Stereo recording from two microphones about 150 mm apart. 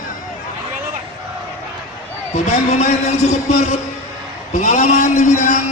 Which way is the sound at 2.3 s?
50° left (ahead or behind).